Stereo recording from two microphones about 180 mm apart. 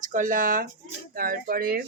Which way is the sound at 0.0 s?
45° right (ahead or behind).